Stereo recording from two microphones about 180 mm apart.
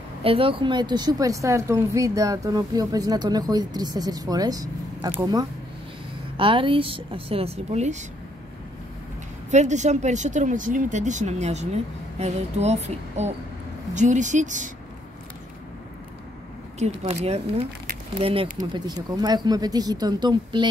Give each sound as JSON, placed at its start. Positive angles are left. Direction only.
{"t": 0.2, "sound": "a woman's voice", "side_deg": -30}
{"t": 9.5, "sound": "speech", "side_deg": -40}
{"t": 17.0, "sound": "a woman's voice", "side_deg": -35}